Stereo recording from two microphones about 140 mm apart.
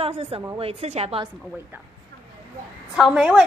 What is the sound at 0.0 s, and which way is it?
A woman's voice, 45° right (ahead or behind).